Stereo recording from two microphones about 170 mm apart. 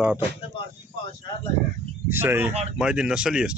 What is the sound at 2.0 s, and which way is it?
Speech, 10° right (ahead or behind).